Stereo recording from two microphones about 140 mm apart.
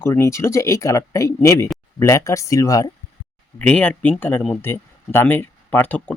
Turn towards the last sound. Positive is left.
turn(degrees=10)  # may be behind; listen again after turning